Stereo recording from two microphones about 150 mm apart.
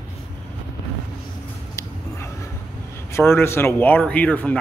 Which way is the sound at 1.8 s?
20° left (ahead or behind).